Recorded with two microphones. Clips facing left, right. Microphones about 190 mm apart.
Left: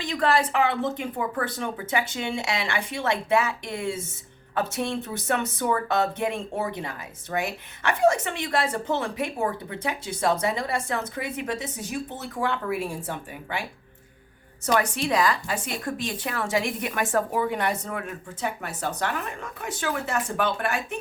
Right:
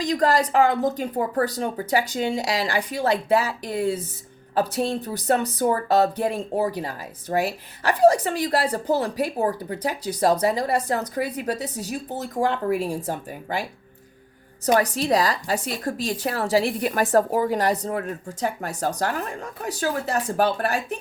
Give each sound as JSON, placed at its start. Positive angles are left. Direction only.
{"t": 0.0, "sound": "speech", "side_deg": -40}
{"t": 14.7, "sound": "speech", "side_deg": -35}